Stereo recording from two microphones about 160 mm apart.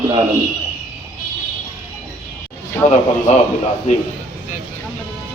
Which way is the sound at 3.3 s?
45° left (ahead or behind).